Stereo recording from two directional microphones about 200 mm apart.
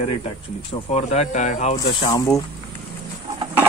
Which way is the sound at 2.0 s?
20° left (ahead or behind).